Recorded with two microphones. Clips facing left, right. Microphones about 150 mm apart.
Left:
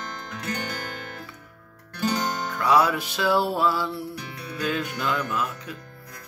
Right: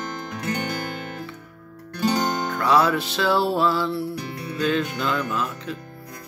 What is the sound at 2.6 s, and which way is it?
Music, 10° left (ahead or behind).